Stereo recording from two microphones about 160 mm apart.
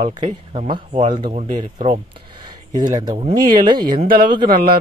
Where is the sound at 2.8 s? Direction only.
25° right (ahead or behind).